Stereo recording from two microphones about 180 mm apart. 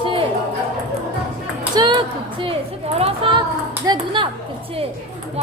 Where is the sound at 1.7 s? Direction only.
25° right (ahead or behind).